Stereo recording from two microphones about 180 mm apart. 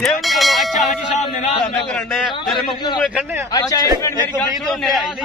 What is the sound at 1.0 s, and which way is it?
Speech, 40° left (ahead or behind).